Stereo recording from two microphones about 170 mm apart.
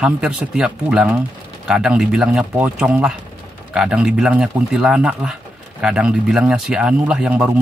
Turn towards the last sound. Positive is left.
turn(degrees=-5)  # may be behind; listen again after turning